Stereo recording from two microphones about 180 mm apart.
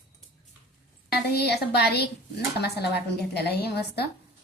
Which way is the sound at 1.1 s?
65° left (ahead or behind).